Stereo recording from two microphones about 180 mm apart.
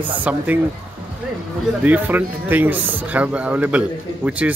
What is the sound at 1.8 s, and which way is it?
A man's voice, 10° right (ahead or behind).